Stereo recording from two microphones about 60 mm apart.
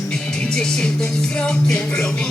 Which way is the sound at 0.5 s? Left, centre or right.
Centre.